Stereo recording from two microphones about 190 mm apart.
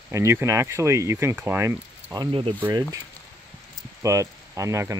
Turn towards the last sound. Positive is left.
turn(degrees=-15)  # may be behind; listen again after turning